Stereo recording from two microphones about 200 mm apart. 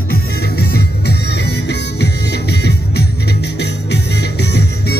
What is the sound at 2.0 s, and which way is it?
Music, 55° left (ahead or behind).